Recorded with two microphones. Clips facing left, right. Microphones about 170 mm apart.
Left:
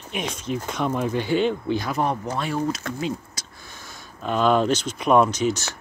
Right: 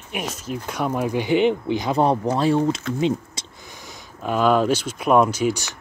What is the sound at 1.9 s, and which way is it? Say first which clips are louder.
Speech: right 6 dB; 30° right (ahead or behind).